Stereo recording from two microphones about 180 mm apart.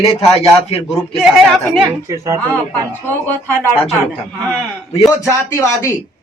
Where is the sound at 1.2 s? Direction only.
5° right (ahead or behind).